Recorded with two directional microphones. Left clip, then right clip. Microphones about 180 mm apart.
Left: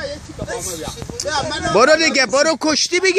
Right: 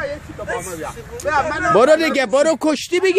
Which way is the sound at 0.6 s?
15° left (ahead or behind).